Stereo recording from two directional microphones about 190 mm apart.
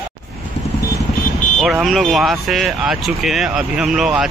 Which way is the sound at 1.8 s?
Centre (ahead or behind).